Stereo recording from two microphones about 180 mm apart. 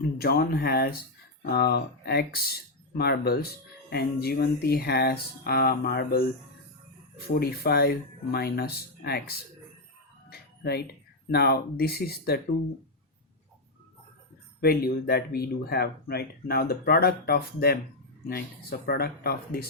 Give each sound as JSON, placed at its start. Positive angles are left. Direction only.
{"t": 0.2, "sound": "speech", "side_deg": 60}
{"t": 7.3, "sound": "speech", "side_deg": 60}
{"t": 10.2, "sound": "music", "side_deg": 60}
{"t": 11.3, "sound": "speech", "side_deg": 60}
{"t": 14.6, "sound": "speech", "side_deg": 60}
{"t": 18.9, "sound": "speech", "side_deg": 60}